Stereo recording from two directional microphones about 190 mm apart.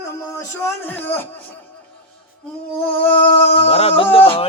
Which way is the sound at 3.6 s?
30° left (ahead or behind).